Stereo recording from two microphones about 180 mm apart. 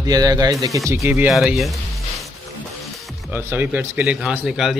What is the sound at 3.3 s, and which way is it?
Speech, 10° right (ahead or behind).